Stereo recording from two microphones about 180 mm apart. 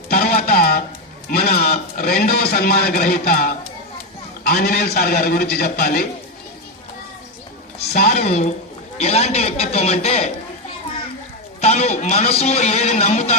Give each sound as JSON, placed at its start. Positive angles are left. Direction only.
{"t": 0.1, "sound": "music", "side_deg": 55}
{"t": 1.3, "sound": "a man's voice", "side_deg": 55}
{"t": 7.9, "sound": "a woman's voice", "side_deg": 55}
{"t": 8.2, "sound": "a man's voice", "side_deg": 40}
{"t": 11.6, "sound": "a man's voice", "side_deg": 35}